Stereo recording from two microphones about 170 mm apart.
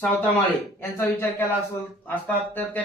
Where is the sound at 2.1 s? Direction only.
10° left (ahead or behind).